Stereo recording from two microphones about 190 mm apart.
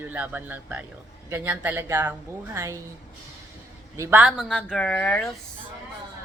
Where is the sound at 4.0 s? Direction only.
10° right (ahead or behind).